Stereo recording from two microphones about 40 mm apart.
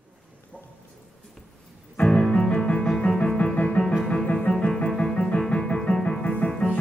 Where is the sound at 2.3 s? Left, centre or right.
Left.